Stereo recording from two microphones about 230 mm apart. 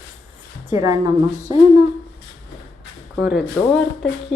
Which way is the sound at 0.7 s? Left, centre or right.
Centre.